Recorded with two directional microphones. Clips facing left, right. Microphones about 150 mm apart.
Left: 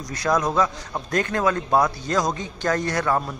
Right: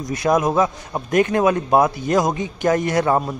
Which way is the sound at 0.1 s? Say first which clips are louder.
Right 4 dB; 20° right (ahead or behind).